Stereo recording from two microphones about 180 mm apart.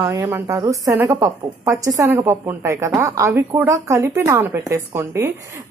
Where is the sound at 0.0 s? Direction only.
15° right (ahead or behind).